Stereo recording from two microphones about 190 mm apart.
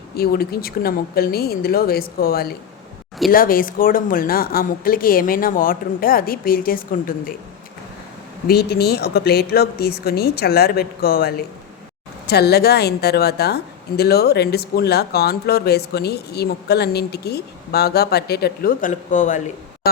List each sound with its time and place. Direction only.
0.2 s a woman's voice: 55° left (ahead or behind)
8.4 s a woman's voice: 55° left (ahead or behind)